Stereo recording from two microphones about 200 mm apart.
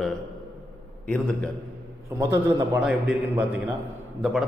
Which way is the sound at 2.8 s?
5° right (ahead or behind).